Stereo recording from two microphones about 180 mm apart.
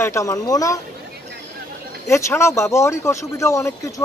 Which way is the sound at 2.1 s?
15° left (ahead or behind).